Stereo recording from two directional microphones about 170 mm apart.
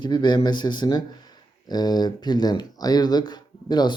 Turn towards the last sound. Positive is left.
turn(degrees=25)  # may be behind; listen again after turning